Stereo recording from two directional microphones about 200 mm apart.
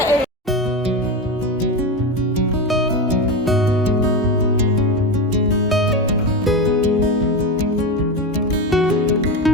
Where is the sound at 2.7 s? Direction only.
Centre (ahead or behind).